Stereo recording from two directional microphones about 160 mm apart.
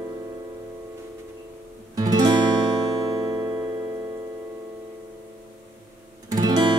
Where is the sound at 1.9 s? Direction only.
25° right (ahead or behind).